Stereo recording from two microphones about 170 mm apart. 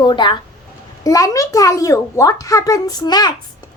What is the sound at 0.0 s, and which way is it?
A child's voice, 25° left (ahead or behind).